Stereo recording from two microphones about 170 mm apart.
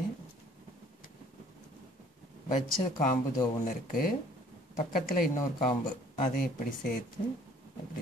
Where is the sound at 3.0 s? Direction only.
50° left (ahead or behind).